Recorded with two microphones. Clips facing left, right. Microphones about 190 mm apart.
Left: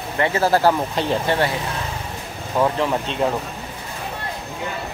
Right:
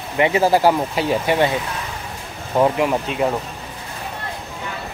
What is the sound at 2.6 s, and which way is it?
Speech, 10° right (ahead or behind).